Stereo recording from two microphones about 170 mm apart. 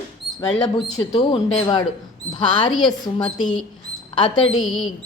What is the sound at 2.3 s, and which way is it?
Speech, 25° left (ahead or behind).